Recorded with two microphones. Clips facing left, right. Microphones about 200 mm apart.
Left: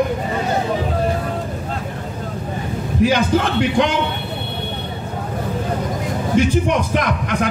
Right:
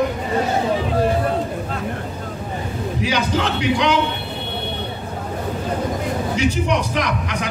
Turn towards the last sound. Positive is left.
turn(degrees=50)  # may be behind; listen again after turning